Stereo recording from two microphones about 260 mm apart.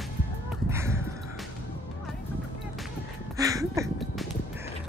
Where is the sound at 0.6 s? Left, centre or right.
Centre.